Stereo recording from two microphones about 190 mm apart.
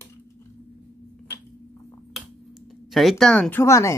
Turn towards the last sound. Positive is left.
turn(degrees=15)  # may be behind; listen again after turning